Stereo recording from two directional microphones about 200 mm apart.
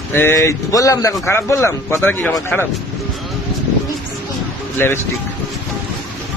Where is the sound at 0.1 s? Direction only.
10° left (ahead or behind).